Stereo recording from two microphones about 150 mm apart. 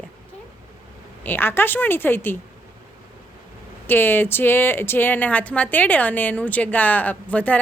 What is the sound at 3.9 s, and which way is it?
A woman's voice, 15° left (ahead or behind).